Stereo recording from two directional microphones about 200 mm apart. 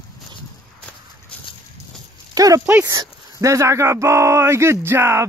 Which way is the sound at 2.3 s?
15° right (ahead or behind).